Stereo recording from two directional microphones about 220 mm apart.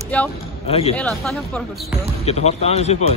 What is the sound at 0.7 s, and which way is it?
Speech, 25° left (ahead or behind).